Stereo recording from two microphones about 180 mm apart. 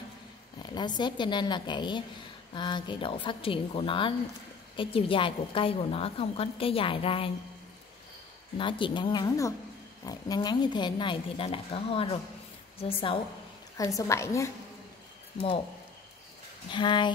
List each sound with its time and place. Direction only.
0.6 s a woman's voice: 25° left (ahead or behind)
8.5 s a woman's voice: 30° left (ahead or behind)
13.7 s a woman's voice: 20° left (ahead or behind)
16.7 s speech: 25° left (ahead or behind)